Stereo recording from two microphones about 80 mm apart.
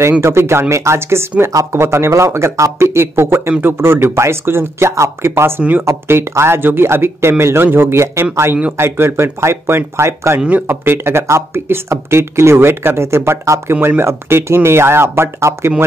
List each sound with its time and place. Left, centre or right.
0.2 s speech: right
1.5 s speech: right
1.8 s speech: right
5.6 s speech: right
5.9 s speech: right